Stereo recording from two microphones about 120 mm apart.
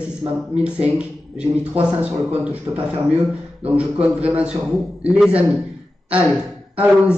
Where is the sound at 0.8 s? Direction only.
10° right (ahead or behind).